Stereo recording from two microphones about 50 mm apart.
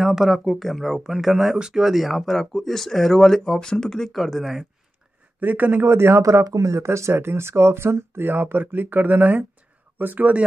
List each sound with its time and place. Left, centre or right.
0.0 s speech: centre
5.4 s speech: right